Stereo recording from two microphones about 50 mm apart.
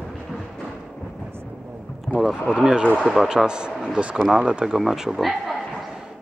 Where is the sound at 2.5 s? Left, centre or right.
Centre.